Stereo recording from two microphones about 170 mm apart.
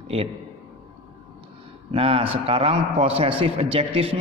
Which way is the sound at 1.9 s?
35° right (ahead or behind).